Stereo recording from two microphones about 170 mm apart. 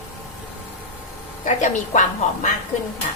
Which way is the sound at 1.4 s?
45° left (ahead or behind).